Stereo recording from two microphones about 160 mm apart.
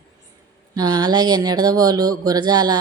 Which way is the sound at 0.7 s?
25° right (ahead or behind).